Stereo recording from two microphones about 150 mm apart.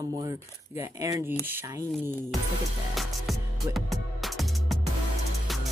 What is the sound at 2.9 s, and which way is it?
Music, centre (ahead or behind).